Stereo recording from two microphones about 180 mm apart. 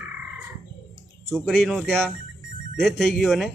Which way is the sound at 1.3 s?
Centre (ahead or behind).